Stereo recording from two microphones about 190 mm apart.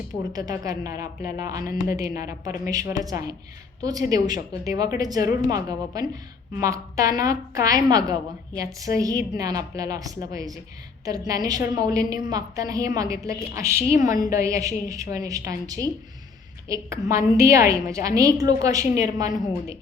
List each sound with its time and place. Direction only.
0.3 s a woman's voice: 20° right (ahead or behind)